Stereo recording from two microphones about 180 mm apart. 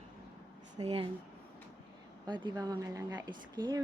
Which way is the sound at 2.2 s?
25° right (ahead or behind).